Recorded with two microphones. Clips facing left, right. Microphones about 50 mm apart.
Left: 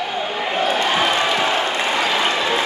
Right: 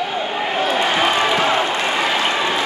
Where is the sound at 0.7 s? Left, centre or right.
Centre.